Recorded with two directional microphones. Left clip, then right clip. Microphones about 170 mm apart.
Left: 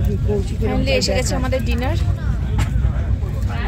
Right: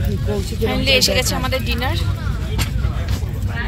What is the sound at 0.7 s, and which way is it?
Speech, 10° left (ahead or behind).